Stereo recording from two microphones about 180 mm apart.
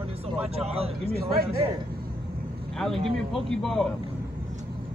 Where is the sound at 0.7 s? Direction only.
35° right (ahead or behind).